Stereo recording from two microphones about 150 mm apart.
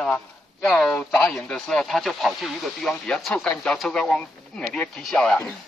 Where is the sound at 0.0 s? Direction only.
5° left (ahead or behind).